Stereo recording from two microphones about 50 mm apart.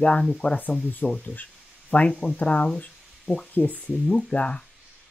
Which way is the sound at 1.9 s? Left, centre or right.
Left.